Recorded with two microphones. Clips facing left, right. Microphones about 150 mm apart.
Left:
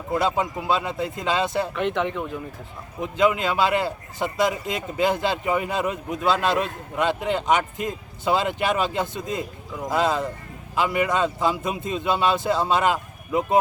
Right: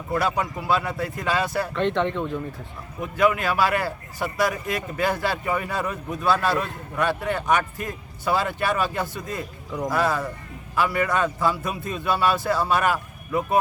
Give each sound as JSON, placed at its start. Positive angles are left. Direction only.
{"t": 0.1, "sound": "speech", "side_deg": 20}
{"t": 1.7, "sound": "speech", "side_deg": 5}
{"t": 3.0, "sound": "speech", "side_deg": 20}